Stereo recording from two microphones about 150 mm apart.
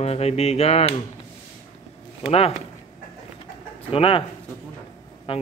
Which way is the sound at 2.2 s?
40° left (ahead or behind).